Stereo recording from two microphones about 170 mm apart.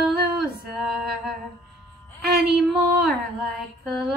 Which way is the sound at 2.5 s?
Centre (ahead or behind).